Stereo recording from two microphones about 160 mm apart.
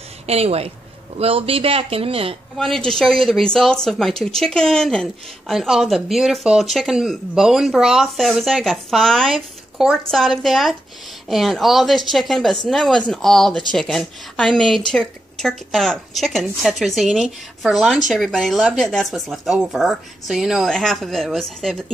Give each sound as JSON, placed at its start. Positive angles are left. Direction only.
{"t": 0.3, "sound": "speech", "side_deg": -40}
{"t": 2.5, "sound": "speech", "side_deg": 0}